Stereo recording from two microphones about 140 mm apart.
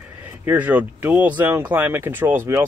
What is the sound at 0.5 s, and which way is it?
Speech, 10° right (ahead or behind).